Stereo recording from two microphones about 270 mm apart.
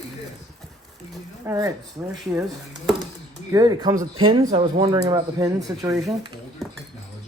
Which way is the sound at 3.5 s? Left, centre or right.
Centre.